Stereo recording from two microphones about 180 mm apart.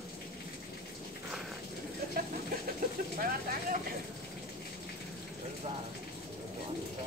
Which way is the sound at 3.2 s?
55° right (ahead or behind).